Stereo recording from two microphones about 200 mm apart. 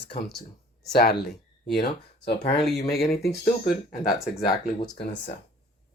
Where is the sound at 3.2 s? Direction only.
45° left (ahead or behind).